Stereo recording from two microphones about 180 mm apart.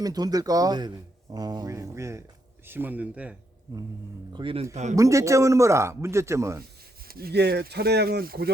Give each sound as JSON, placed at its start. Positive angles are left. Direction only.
{"t": 0.0, "sound": "a man's voice", "side_deg": -20}
{"t": 4.3, "sound": "speech", "side_deg": -25}
{"t": 4.7, "sound": "speech", "side_deg": -40}
{"t": 4.9, "sound": "a man's voice", "side_deg": -15}
{"t": 7.1, "sound": "speech", "side_deg": -60}